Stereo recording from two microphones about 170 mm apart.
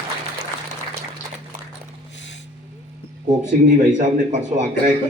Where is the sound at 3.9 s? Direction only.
45° right (ahead or behind).